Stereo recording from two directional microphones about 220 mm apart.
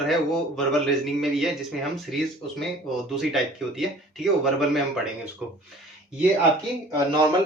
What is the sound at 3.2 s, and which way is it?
A man's voice, centre (ahead or behind).